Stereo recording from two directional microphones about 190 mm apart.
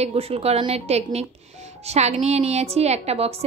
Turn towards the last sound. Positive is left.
turn(degrees=-30)  # may be behind; listen again after turning